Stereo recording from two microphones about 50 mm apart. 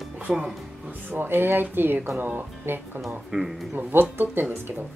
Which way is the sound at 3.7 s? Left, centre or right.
Right.